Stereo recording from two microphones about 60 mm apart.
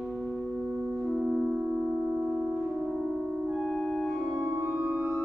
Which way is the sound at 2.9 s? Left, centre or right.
Centre.